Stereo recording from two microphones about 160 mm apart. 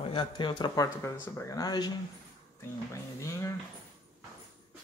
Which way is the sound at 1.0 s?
15° left (ahead or behind).